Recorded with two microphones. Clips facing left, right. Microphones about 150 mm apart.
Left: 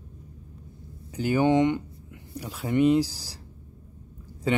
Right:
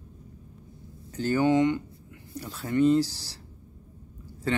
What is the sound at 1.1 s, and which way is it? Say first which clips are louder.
Speech: left 1 dB; 15° left (ahead or behind).